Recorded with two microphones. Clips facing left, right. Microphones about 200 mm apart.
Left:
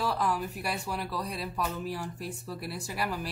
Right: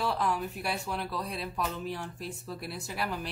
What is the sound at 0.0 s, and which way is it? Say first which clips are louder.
Speech: even; centre (ahead or behind).